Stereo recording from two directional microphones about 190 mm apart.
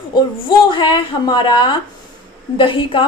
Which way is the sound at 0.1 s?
25° left (ahead or behind).